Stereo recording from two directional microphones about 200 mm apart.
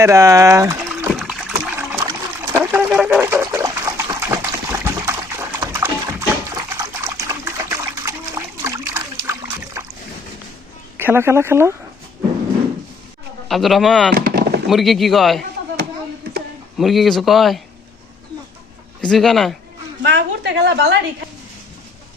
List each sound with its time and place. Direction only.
0.0 s speech: 15° right (ahead or behind)
1.1 s trickle: 5° right (ahead or behind)
2.9 s water: 10° right (ahead or behind)
5.5 s dog: 15° right (ahead or behind)
10.9 s speech: 10° right (ahead or behind)
13.5 s speech: centre (ahead or behind)
14.1 s chop: 50° right (ahead or behind)
14.7 s speech: centre (ahead or behind)
16.7 s speech: centre (ahead or behind)
19.0 s speech: centre (ahead or behind)
20.0 s a sound: 65° right (ahead or behind)